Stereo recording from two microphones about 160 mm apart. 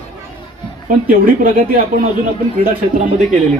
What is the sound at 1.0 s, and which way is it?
Speech, 60° right (ahead or behind).